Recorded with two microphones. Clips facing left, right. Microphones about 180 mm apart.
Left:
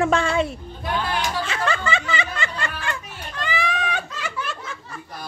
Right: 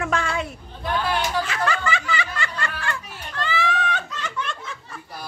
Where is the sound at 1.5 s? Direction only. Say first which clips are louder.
Even; 25° left (ahead or behind); by 4.5 s 5° left (ahead or behind).